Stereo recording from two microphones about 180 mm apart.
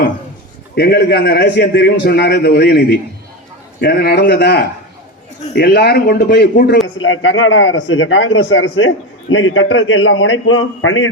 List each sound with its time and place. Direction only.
0.8 s a man's voice: 65° left (ahead or behind)
6.8 s speech: 90° left